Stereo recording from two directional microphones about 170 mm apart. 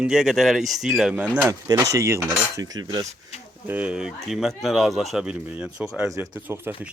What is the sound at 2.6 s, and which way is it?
Cutlery, 20° right (ahead or behind).